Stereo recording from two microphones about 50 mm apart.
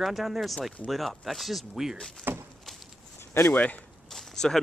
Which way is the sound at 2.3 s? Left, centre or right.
Right.